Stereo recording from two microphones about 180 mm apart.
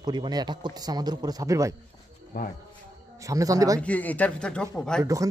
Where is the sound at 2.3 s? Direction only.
50° left (ahead or behind).